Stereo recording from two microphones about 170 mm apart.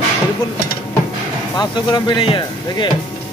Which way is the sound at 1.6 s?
25° left (ahead or behind).